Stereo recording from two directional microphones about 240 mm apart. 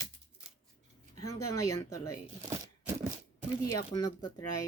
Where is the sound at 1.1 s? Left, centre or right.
Left.